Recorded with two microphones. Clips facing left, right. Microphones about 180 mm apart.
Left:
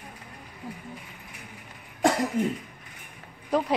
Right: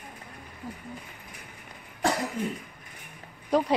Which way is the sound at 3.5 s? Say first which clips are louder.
Right 1 dB; centre (ahead or behind).